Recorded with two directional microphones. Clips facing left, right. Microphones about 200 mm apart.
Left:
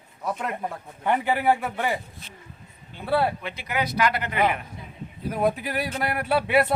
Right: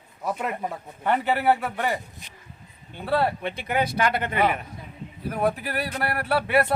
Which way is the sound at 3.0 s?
10° left (ahead or behind).